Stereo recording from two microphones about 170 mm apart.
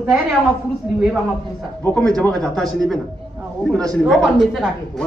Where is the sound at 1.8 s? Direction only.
10° left (ahead or behind).